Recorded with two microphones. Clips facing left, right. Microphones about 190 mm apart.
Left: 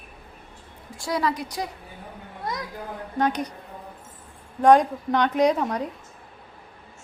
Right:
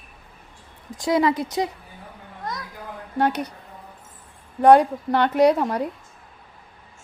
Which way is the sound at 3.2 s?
10° right (ahead or behind).